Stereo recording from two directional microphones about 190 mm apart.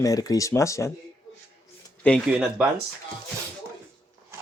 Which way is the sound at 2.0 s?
Centre (ahead or behind).